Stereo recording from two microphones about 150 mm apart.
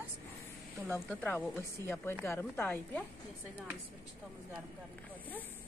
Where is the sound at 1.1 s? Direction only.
10° left (ahead or behind).